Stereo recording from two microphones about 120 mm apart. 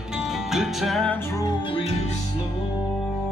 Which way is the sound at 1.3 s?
30° left (ahead or behind).